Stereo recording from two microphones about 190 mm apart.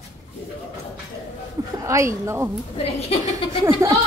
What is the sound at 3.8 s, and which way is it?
Speech, 15° right (ahead or behind).